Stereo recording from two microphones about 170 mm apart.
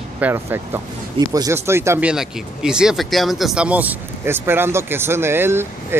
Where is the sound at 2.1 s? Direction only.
5° right (ahead or behind).